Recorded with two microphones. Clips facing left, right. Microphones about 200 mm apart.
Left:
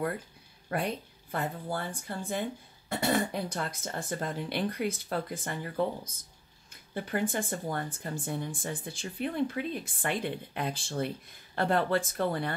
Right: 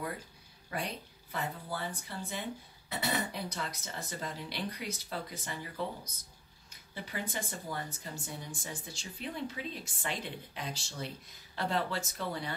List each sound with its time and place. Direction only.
0.7 s speech: 55° left (ahead or behind)